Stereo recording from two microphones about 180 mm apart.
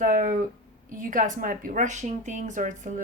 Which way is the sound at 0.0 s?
50° right (ahead or behind).